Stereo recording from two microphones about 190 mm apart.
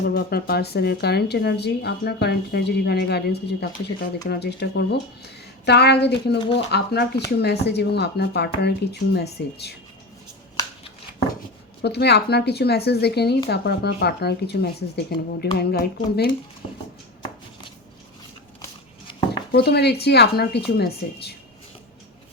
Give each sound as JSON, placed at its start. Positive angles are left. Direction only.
{"t": 0.1, "sound": "a woman's voice", "side_deg": 55}
{"t": 11.8, "sound": "a woman's voice", "side_deg": 60}
{"t": 19.5, "sound": "a woman's voice", "side_deg": 60}